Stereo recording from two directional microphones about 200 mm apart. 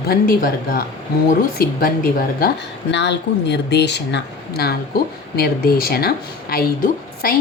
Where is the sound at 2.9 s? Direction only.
60° left (ahead or behind).